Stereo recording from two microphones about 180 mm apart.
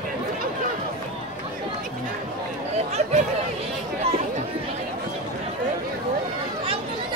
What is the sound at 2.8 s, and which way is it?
Speech, 40° right (ahead or behind).